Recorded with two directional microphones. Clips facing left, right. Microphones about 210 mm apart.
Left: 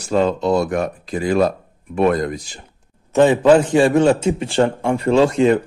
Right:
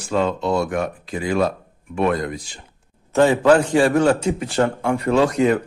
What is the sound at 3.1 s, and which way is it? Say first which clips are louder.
A man's voice: left 2 dB; 20° left (ahead or behind).